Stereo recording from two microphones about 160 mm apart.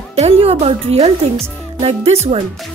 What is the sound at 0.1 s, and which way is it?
Speech, 40° right (ahead or behind).